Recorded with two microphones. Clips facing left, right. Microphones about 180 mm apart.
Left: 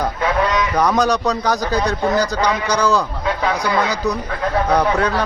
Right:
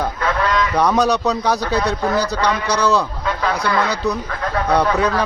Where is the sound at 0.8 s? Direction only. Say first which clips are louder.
Even; 5° right (ahead or behind).